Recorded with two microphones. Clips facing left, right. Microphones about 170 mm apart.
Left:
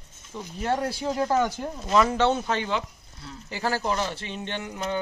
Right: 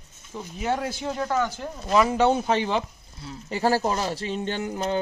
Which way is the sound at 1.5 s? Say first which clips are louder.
Right 1 dB; 10° right (ahead or behind).